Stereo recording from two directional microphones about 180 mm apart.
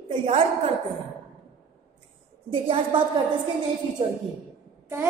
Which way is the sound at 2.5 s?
30° right (ahead or behind).